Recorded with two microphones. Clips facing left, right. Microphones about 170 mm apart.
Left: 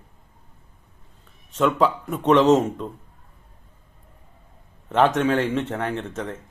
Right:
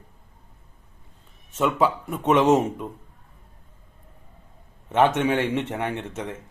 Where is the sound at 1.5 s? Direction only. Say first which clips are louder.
Left 2 dB; 5° right (ahead or behind).